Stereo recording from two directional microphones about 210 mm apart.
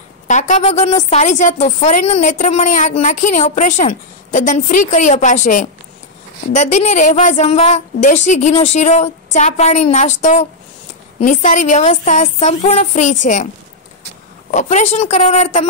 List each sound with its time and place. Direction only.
0.3 s a woman's voice: 35° left (ahead or behind)
14.5 s a woman's voice: 35° left (ahead or behind)